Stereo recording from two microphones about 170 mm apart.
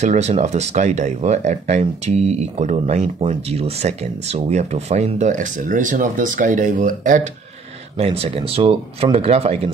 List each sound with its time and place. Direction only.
0.0 s speech: 40° right (ahead or behind)
8.0 s speech: 35° right (ahead or behind)